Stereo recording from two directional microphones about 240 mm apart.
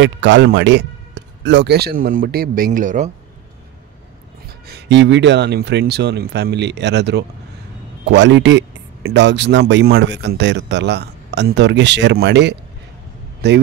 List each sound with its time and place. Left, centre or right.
0.0 s speech: right
4.6 s speech: right